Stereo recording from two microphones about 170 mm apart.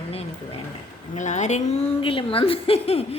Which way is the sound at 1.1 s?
45° left (ahead or behind).